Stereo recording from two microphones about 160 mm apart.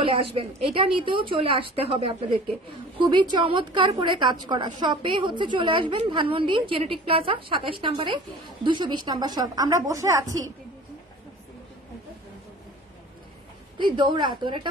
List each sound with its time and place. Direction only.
0.0 s a woman's voice: 35° right (ahead or behind)
13.7 s a woman's voice: 30° right (ahead or behind)